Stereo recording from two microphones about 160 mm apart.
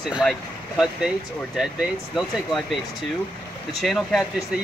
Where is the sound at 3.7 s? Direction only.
Centre (ahead or behind).